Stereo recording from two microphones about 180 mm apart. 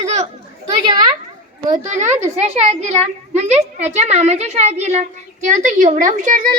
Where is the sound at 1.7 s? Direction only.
40° right (ahead or behind).